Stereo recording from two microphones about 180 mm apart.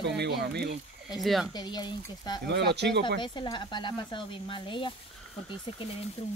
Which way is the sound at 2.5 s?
70° right (ahead or behind).